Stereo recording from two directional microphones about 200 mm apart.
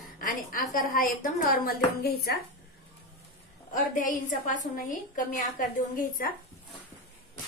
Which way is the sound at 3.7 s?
40° left (ahead or behind).